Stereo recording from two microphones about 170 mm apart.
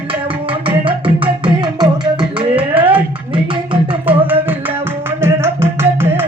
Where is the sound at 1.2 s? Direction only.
30° right (ahead or behind).